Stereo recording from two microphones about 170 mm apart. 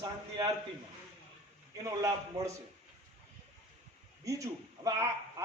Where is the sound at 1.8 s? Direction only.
20° right (ahead or behind).